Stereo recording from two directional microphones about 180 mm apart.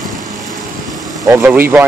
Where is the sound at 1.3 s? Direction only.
10° right (ahead or behind).